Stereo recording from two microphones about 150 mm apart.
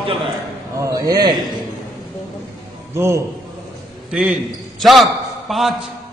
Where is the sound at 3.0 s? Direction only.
20° right (ahead or behind).